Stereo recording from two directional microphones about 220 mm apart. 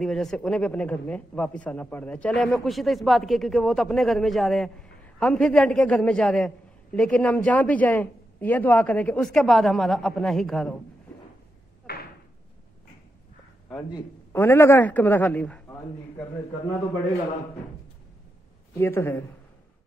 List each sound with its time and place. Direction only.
0.0 s a man's voice: centre (ahead or behind)
11.8 s a sound: 45° left (ahead or behind)
13.9 s a man's voice: 10° left (ahead or behind)
18.8 s a man's voice: 10° left (ahead or behind)